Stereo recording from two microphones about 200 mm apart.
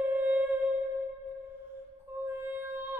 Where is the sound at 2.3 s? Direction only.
10° right (ahead or behind).